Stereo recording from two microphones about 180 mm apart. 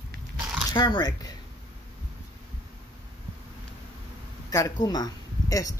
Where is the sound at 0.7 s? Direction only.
25° left (ahead or behind).